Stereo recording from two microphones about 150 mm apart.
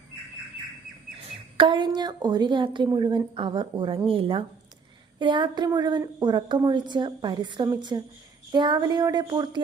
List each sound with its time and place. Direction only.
1.5 s a woman's voice: 30° right (ahead or behind)